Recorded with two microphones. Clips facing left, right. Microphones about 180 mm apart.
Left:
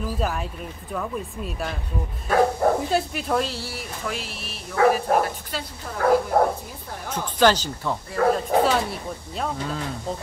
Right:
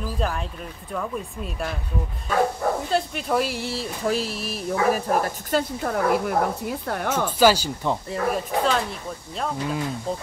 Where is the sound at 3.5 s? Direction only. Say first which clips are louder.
Right 5 dB; 25° right (ahead or behind).